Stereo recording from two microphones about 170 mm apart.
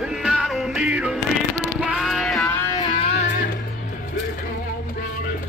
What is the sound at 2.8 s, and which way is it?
Music, 35° left (ahead or behind).